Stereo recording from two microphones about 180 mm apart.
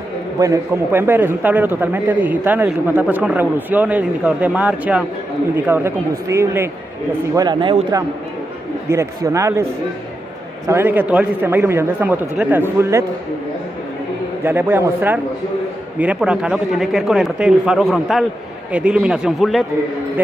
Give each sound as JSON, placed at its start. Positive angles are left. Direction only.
{"t": 0.4, "sound": "a man's voice", "side_deg": -15}
{"t": 7.3, "sound": "speech", "side_deg": -25}
{"t": 8.8, "sound": "a man's voice", "side_deg": -15}
{"t": 10.7, "sound": "a man's voice", "side_deg": -10}
{"t": 14.4, "sound": "a man's voice", "side_deg": -10}